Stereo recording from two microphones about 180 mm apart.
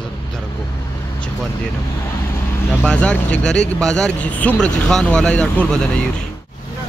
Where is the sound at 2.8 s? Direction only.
5° left (ahead or behind).